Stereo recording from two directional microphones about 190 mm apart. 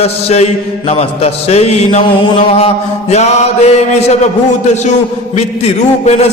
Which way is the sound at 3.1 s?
35° left (ahead or behind).